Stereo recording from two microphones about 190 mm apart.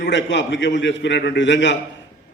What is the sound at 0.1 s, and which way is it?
A man's voice, 75° left (ahead or behind).